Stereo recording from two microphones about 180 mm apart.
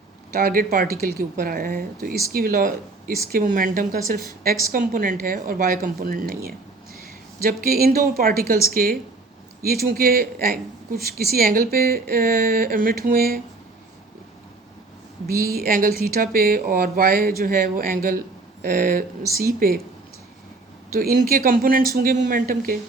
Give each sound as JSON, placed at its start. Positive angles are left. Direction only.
{"t": 0.3, "sound": "speech", "side_deg": -55}
{"t": 15.3, "sound": "speech", "side_deg": -55}
{"t": 20.9, "sound": "speech", "side_deg": -50}